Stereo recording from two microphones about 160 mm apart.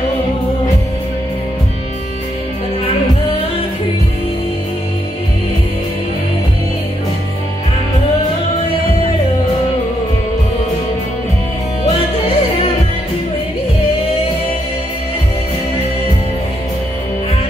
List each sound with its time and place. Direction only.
11.8 s music: 40° left (ahead or behind)